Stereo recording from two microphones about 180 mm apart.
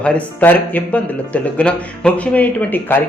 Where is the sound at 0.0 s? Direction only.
5° left (ahead or behind).